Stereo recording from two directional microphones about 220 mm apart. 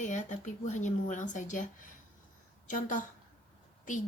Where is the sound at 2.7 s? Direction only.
35° left (ahead or behind).